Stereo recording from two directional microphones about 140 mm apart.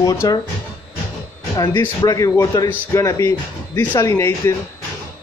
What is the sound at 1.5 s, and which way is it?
Speech, 30° left (ahead or behind).